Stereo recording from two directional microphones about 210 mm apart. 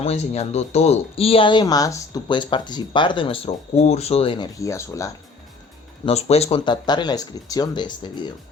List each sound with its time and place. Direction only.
0.0 s speech: 30° left (ahead or behind)
4.6 s speech: 15° left (ahead or behind)
6.1 s speech: 30° left (ahead or behind)